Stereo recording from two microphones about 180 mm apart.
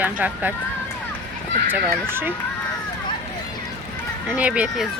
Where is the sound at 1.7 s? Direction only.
10° right (ahead or behind).